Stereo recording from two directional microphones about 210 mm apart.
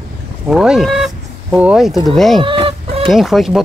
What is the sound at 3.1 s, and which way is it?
Speech, centre (ahead or behind).